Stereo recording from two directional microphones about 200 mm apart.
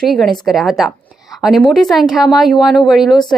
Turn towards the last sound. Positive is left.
turn(degrees=0)  # may be behind; listen again after turning